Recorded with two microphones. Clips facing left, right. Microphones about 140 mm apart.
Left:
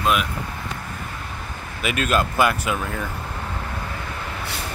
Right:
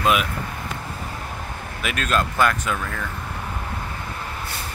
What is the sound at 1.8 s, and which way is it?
Speech, 5° left (ahead or behind).